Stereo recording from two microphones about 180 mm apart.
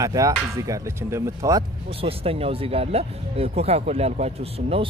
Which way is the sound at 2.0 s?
35° right (ahead or behind).